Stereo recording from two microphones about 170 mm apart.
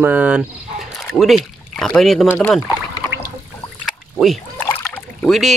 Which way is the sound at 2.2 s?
10° left (ahead or behind).